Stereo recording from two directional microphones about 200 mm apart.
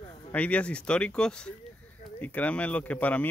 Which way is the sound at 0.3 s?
5° left (ahead or behind).